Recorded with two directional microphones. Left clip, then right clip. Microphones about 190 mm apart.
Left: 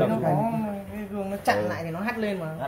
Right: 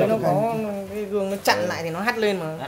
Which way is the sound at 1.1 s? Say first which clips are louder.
Right 4 dB; 60° right (ahead or behind).